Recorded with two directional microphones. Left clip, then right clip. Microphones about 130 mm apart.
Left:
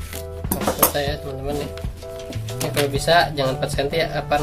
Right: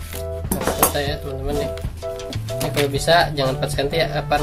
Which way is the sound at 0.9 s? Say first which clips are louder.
Even; 10° left (ahead or behind).